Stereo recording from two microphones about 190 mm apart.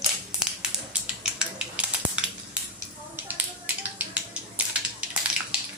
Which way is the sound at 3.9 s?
10° right (ahead or behind).